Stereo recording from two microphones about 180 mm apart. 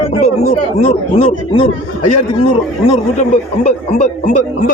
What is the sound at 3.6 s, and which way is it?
Speech, 45° left (ahead or behind).